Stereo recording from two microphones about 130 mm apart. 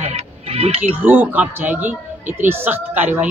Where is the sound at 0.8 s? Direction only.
15° right (ahead or behind).